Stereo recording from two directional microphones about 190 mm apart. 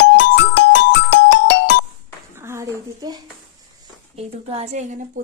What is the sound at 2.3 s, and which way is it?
Speech, 15° right (ahead or behind).